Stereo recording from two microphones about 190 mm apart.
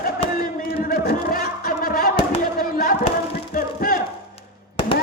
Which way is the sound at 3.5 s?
50° left (ahead or behind).